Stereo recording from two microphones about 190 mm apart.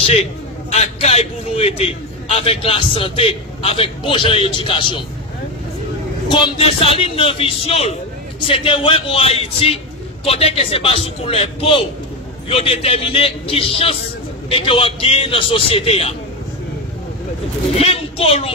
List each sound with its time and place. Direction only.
0.0 s a man's voice: 35° left (ahead or behind)
6.2 s a man's voice: 25° left (ahead or behind)
17.7 s a woman's voice: 30° left (ahead or behind)